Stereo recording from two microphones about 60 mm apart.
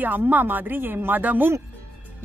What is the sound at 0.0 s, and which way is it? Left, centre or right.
A woman's voice, right.